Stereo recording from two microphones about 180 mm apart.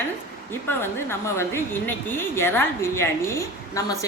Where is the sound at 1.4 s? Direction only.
10° left (ahead or behind).